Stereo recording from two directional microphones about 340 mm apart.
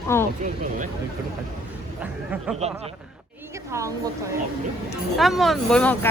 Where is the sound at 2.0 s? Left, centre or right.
Centre.